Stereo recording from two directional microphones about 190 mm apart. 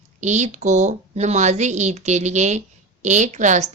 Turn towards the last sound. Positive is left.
turn(degrees=-40)  # may be behind; listen again after turning